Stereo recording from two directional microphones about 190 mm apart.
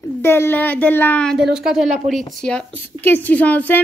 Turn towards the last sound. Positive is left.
turn(degrees=10)  # may be behind; listen again after turning